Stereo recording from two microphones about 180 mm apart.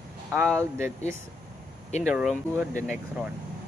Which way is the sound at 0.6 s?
15° right (ahead or behind).